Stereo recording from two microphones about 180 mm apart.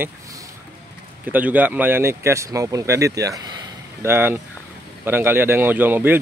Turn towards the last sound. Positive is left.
turn(degrees=-10)  # may be behind; listen again after turning